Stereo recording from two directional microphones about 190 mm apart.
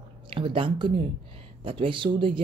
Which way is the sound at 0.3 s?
25° right (ahead or behind).